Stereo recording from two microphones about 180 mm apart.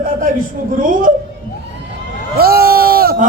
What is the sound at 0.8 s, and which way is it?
Speech, 50° right (ahead or behind).